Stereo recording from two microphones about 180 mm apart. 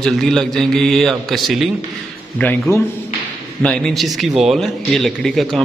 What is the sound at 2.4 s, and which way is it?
A man's voice, 10° left (ahead or behind).